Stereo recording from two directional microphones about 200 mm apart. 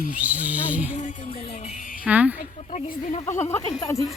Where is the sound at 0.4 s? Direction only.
5° right (ahead or behind).